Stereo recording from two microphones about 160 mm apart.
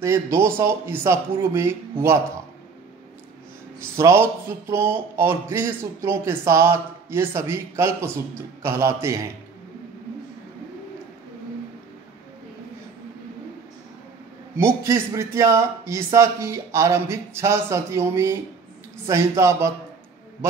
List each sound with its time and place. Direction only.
0.0 s speech: 15° right (ahead or behind)
3.9 s speech: 15° right (ahead or behind)
14.6 s speech: 15° right (ahead or behind)